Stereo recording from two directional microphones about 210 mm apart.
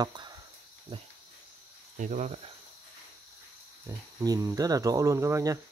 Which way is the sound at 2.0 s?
35° right (ahead or behind).